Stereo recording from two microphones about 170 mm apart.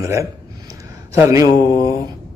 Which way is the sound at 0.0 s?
20° right (ahead or behind).